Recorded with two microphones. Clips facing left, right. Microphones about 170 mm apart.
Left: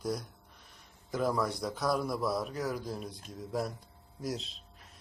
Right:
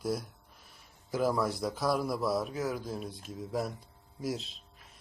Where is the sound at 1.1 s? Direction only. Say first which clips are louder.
Right 2 dB; 5° right (ahead or behind).